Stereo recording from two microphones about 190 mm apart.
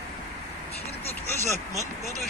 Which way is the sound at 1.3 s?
15° left (ahead or behind).